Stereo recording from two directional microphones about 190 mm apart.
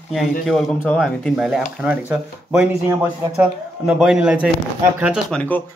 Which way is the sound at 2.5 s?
10° right (ahead or behind).